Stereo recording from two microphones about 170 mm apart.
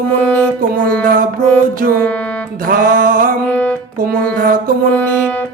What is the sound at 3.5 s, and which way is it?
Music, 10° left (ahead or behind).